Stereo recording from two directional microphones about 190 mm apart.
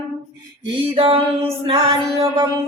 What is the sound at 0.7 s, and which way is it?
Mantra, 25° right (ahead or behind).